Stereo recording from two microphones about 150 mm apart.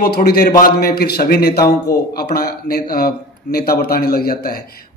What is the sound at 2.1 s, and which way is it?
A man's voice, 90° left.